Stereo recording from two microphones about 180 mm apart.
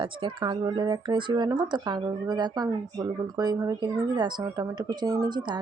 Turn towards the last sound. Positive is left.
turn(degrees=-25)  # may be behind; listen again after turning